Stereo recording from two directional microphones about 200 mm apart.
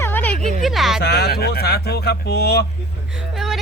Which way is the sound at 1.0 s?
55° left (ahead or behind).